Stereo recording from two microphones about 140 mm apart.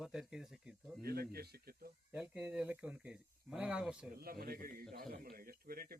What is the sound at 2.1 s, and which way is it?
Speech, 10° right (ahead or behind).